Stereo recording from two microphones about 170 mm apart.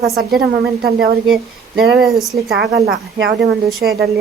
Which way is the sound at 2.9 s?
70° right (ahead or behind).